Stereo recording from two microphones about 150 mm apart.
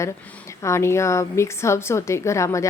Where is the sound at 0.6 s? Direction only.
20° left (ahead or behind).